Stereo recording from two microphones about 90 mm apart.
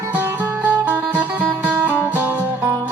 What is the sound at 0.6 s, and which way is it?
Music, 20° right (ahead or behind).